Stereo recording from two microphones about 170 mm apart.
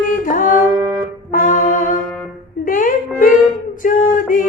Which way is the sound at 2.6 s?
55° left (ahead or behind).